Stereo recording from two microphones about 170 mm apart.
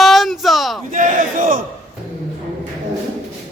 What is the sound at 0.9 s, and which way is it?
Battle cry, 50° right (ahead or behind).